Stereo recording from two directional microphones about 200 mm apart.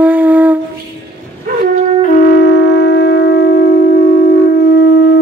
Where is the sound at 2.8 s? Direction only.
55° left (ahead or behind).